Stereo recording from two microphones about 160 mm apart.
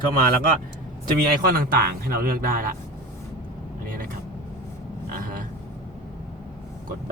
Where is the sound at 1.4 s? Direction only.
65° right (ahead or behind).